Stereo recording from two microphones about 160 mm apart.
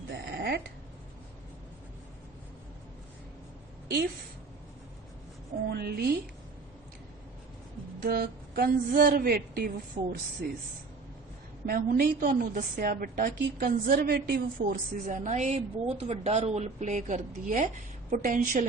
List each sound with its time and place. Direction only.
0.1 s a sound: 90° right
5.6 s a woman's voice: 75° right (ahead or behind)
8.0 s a woman's voice: 70° right (ahead or behind)
11.6 s a woman's voice: 65° right (ahead or behind)
14.7 s a woman's voice: 50° right (ahead or behind)